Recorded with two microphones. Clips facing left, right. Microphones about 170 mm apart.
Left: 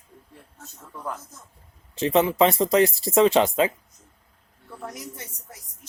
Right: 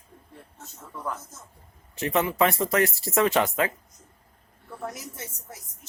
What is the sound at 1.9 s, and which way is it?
Speech, 20° left (ahead or behind).